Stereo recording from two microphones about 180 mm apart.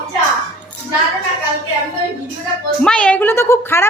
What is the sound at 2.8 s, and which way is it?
A woman's voice, 5° left (ahead or behind).